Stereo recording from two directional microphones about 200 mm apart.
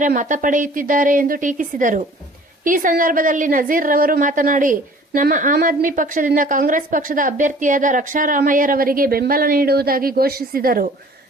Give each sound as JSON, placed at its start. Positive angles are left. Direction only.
{"t": 0.0, "sound": "a woman's voice", "side_deg": -40}